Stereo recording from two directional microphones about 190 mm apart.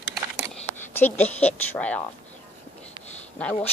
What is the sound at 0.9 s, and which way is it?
Speech, 10° left (ahead or behind).